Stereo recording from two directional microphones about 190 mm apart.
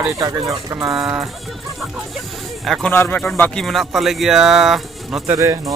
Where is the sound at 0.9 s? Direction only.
5° right (ahead or behind).